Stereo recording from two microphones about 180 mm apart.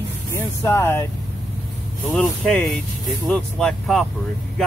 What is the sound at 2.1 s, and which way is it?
Speech, 5° left (ahead or behind).